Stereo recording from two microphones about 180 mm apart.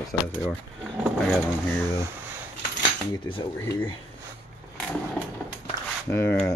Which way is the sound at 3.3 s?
30° left (ahead or behind).